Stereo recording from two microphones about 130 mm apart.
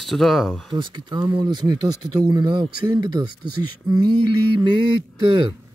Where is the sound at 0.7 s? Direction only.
35° right (ahead or behind).